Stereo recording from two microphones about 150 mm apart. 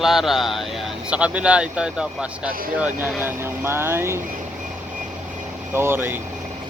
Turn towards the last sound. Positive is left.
turn(degrees=-15)  # may be behind; listen again after turning